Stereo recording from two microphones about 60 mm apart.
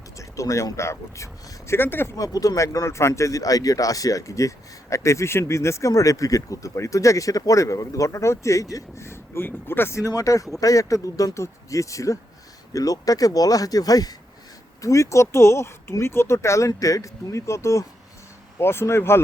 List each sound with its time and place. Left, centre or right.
0.2 s speech: left
2.1 s speech: left
3.1 s speech: left
5.9 s speech: left
9.0 s speech: left
10.0 s speech: left
12.7 s speech: left
14.8 s speech: left
16.6 s speech: left
18.6 s speech: left